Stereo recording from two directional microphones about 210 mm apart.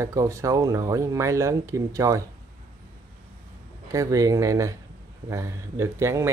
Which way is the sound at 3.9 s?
15° right (ahead or behind).